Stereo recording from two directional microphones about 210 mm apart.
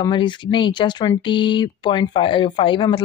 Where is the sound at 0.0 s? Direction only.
20° left (ahead or behind).